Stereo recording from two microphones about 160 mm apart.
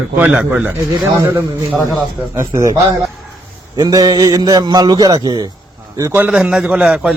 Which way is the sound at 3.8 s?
25° right (ahead or behind).